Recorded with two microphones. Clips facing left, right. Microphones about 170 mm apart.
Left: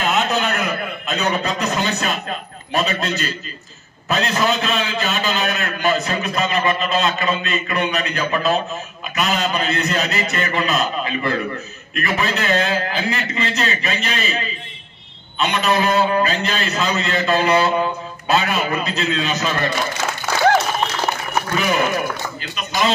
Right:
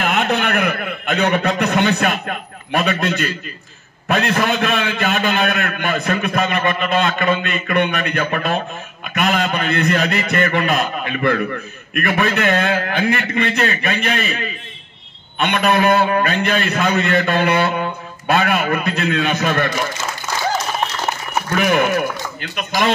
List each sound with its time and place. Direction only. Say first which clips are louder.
0.1 s a sound: right 1 dB; 60° right (ahead or behind)
4.1 s a man's voice: right 2 dB; 55° right (ahead or behind)
21.5 s a man's voice: right 4 dB; 60° right (ahead or behind)